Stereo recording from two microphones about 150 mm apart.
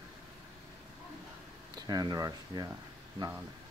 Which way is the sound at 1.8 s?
25° right (ahead or behind).